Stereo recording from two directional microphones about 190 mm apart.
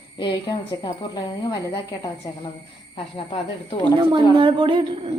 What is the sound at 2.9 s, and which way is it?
Speech, 30° left (ahead or behind).